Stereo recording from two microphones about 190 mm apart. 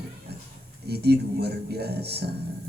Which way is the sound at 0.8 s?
60° right (ahead or behind).